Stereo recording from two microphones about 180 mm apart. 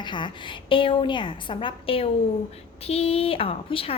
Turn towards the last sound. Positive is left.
turn(degrees=30)  # may be behind; listen again after turning